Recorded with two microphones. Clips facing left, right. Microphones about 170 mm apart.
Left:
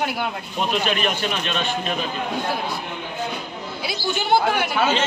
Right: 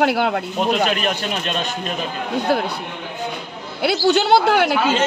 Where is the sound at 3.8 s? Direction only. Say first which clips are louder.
Right 10 dB; 75° right (ahead or behind).